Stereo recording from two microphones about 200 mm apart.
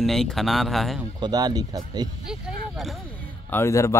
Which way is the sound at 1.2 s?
20° right (ahead or behind).